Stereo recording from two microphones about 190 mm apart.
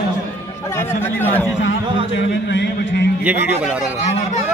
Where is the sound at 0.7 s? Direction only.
10° left (ahead or behind).